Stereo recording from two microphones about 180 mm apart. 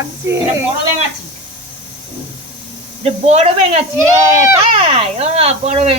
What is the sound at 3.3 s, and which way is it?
Speech, 40° right (ahead or behind).